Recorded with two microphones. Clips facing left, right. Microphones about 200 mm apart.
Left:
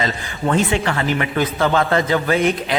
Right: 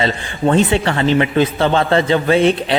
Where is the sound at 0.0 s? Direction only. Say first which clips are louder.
Right 5 dB; 30° right (ahead or behind).